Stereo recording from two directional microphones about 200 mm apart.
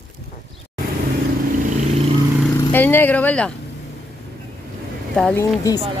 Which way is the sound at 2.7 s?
10° left (ahead or behind).